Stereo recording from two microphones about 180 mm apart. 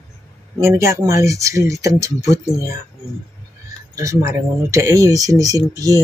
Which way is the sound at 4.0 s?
15° right (ahead or behind).